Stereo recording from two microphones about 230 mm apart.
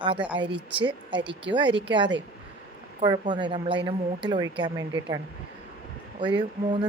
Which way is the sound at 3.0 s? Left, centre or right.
Centre.